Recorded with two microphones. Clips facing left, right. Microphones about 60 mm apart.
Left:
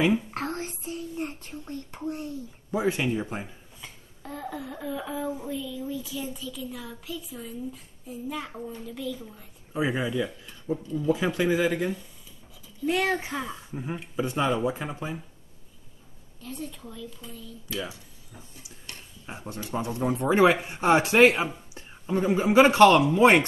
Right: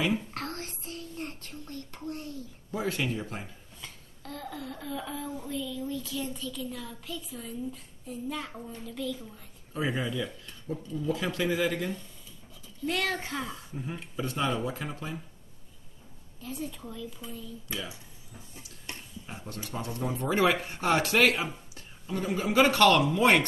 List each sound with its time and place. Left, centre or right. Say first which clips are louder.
0.0 s a sound: left 5 dB; left
5.5 s speech: left 1 dB; centre
11.1 s speech: left 4 dB; centre
12.9 s speech: left 5 dB; centre
16.3 s a woman's voice: even; centre
18.9 s a sound: right 2 dB; right
19.2 s speech: left 5 dB; left